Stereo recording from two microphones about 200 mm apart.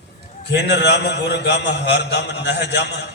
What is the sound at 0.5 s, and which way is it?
A man's voice, 55° left (ahead or behind).